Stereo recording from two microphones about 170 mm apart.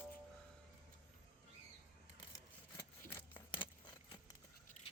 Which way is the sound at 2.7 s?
15° left (ahead or behind).